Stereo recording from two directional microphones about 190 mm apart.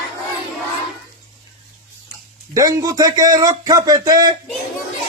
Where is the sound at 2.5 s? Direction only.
20° right (ahead or behind).